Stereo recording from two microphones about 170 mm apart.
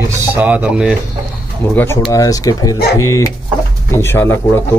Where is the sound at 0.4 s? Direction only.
10° right (ahead or behind).